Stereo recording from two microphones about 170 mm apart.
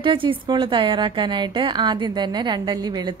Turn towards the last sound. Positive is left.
turn(degrees=-25)  # may be behind; listen again after turning